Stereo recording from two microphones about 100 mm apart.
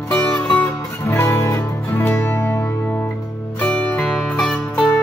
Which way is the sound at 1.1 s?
30° left (ahead or behind).